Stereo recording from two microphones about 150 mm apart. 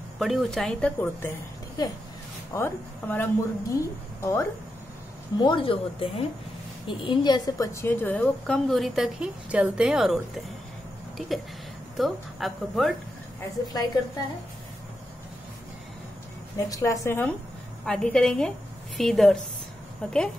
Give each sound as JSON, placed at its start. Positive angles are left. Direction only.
{"t": 0.2, "sound": "a woman's voice", "side_deg": 0}
{"t": 2.5, "sound": "a woman's voice", "side_deg": 15}
{"t": 5.4, "sound": "a woman's voice", "side_deg": 35}
{"t": 16.5, "sound": "a woman's voice", "side_deg": 20}